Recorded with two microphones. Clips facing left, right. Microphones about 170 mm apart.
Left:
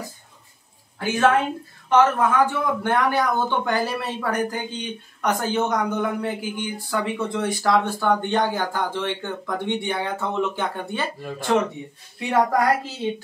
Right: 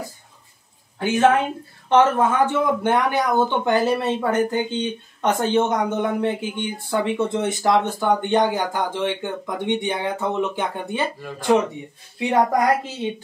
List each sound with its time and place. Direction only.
1.9 s speech: 25° right (ahead or behind)